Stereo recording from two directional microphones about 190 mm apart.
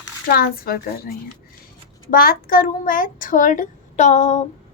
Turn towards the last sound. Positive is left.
turn(degrees=40)  # may be behind; listen again after turning